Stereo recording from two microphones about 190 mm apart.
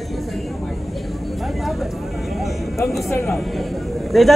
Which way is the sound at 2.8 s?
Centre (ahead or behind).